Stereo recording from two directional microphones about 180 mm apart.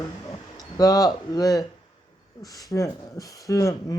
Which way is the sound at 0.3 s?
20° left (ahead or behind).